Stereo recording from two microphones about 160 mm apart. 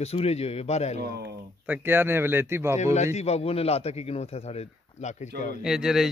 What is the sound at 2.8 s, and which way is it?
A man's voice, 45° left (ahead or behind).